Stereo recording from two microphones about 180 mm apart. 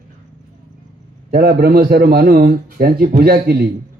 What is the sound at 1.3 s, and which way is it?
A man's voice, 60° right (ahead or behind).